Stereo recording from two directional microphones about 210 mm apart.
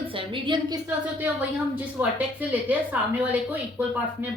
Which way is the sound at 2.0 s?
10° right (ahead or behind).